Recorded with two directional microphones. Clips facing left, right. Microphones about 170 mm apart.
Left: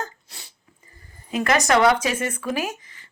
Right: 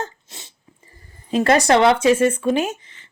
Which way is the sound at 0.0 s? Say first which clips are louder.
Right 3 dB; 20° right (ahead or behind).